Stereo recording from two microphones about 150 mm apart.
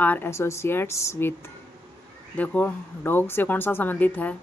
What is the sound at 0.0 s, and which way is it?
Speech, 15° left (ahead or behind).